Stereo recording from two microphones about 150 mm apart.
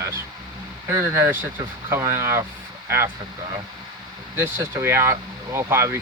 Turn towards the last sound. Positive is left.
turn(degrees=-15)  # may be behind; listen again after turning